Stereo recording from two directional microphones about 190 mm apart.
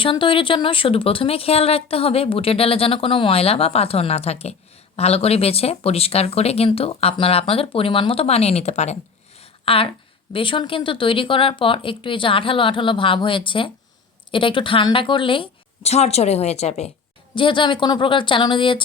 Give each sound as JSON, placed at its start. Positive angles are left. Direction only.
{"t": 0.0, "sound": "speech", "side_deg": 25}
{"t": 9.4, "sound": "a sound", "side_deg": 30}
{"t": 10.3, "sound": "speech", "side_deg": 25}